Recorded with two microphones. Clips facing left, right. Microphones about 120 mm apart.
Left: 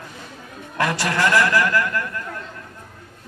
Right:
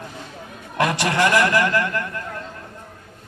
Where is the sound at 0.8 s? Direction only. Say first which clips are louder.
Right 2 dB; 20° right (ahead or behind).